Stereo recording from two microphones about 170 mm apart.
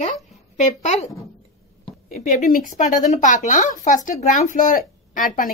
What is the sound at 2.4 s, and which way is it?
A woman's voice, 50° left (ahead or behind).